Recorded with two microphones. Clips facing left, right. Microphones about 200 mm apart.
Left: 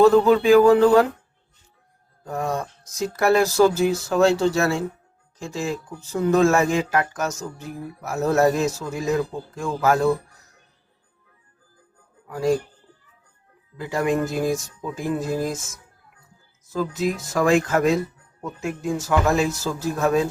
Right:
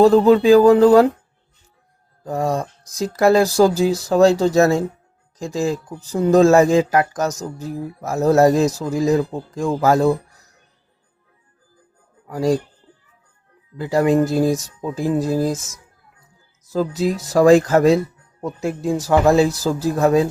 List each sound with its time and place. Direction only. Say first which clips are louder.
0.0 s speech: right 3 dB; 35° right (ahead or behind)
2.2 s music: right 5 dB; 30° right (ahead or behind)
3.2 s speech: right 4 dB; 35° right (ahead or behind)
12.3 s speech: right 3 dB; 35° right (ahead or behind)
13.7 s speech: right 6 dB; 35° right (ahead or behind)
16.7 s speech: right 4 dB; 35° right (ahead or behind)